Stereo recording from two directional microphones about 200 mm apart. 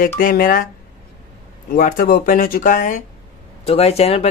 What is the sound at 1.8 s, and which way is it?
Speech, 45° left (ahead or behind).